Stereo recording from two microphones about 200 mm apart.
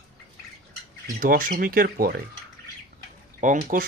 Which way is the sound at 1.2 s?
45° right (ahead or behind).